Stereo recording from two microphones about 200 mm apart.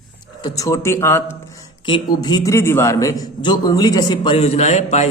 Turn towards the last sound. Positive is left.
turn(degrees=35)  # may be behind; listen again after turning